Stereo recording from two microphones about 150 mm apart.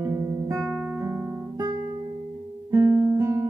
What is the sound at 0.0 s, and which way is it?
Music, 20° right (ahead or behind).